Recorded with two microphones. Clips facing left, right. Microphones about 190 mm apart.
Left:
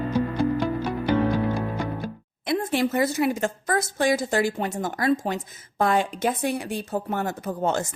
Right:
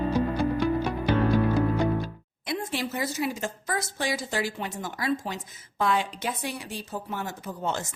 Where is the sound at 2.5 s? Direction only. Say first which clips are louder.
Left 7 dB; 55° left (ahead or behind).